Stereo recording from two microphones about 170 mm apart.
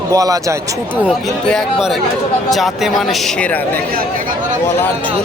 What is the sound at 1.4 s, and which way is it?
Speech, centre (ahead or behind).